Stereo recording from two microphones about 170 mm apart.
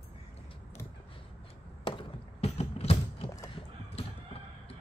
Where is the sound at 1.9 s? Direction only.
35° left (ahead or behind).